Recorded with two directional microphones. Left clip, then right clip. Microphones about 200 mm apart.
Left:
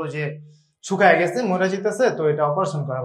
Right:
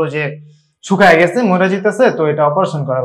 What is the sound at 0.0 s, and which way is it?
A man's voice, 40° right (ahead or behind).